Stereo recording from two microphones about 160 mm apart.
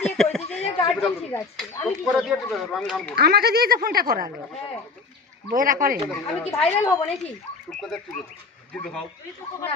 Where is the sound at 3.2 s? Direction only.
80° right.